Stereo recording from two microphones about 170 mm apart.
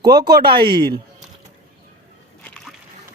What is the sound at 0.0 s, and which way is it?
Speech, 20° right (ahead or behind).